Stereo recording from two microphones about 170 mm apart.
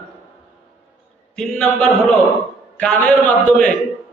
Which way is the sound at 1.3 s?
5° left (ahead or behind).